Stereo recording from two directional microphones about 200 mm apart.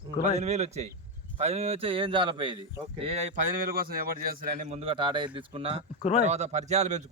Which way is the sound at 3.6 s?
50° right (ahead or behind).